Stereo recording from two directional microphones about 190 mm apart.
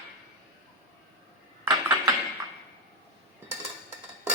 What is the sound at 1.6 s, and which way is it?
Dishes, 20° right (ahead or behind).